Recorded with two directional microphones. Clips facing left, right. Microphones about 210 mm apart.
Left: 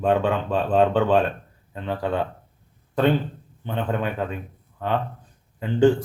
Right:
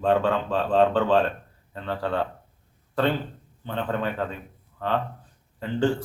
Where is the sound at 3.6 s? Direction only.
15° left (ahead or behind).